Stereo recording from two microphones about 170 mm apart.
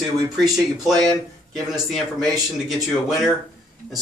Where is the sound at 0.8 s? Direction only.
Centre (ahead or behind).